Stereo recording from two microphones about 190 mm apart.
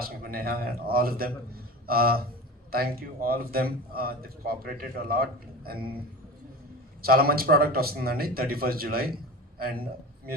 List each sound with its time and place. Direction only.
0.0 s a man's voice: 50° right (ahead or behind)
7.0 s a man's voice: 50° right (ahead or behind)